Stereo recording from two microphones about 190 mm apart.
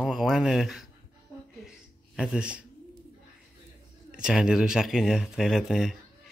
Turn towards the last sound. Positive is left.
turn(degrees=0)  # may be behind; listen again after turning